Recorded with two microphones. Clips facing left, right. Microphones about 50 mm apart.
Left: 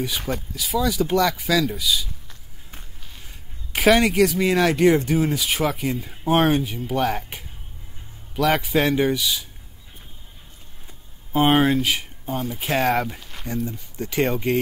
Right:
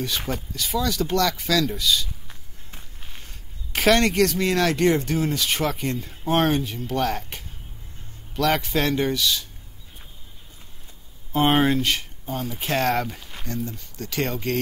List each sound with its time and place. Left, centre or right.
0.3 s speech: centre
3.3 s speech: centre
11.3 s speech: centre
13.7 s speech: centre